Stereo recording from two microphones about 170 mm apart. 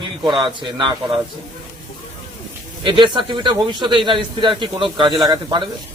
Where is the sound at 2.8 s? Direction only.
30° right (ahead or behind).